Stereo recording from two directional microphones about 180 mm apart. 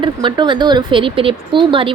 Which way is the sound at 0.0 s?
25° right (ahead or behind).